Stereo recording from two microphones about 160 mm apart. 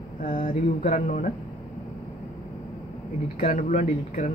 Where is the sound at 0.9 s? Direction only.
50° left (ahead or behind).